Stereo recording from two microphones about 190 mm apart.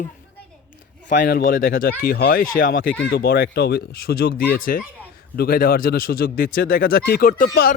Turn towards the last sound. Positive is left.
turn(degrees=50)  # may be behind; listen again after turning